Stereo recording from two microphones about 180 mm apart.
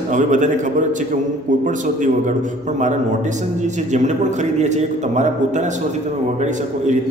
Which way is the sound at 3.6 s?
40° right (ahead or behind).